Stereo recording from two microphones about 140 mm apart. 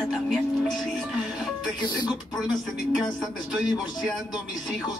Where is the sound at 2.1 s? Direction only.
5° right (ahead or behind).